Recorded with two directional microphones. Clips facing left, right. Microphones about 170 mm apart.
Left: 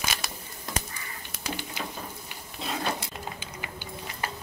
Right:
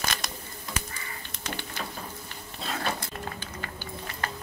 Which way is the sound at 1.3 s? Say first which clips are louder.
Left 2 dB; 10° left (ahead or behind).